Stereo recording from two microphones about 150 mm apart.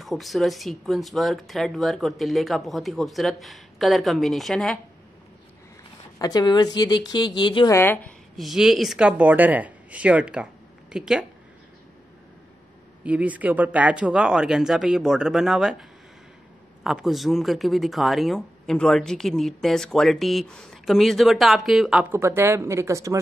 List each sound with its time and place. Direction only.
0.0 s speech: centre (ahead or behind)
6.1 s a woman's voice: 25° left (ahead or behind)
7.7 s a woman's voice: 15° left (ahead or behind)
8.4 s speech: centre (ahead or behind)
13.0 s speech: 10° right (ahead or behind)
16.8 s speech: centre (ahead or behind)
22.1 s speech: 15° right (ahead or behind)